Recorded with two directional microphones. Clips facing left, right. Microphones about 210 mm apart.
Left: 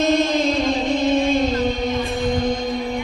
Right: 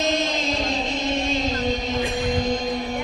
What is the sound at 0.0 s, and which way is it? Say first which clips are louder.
Music: left 6 dB; 55° left (ahead or behind).